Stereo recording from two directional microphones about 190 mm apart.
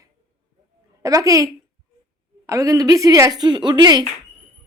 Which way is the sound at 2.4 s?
15° right (ahead or behind).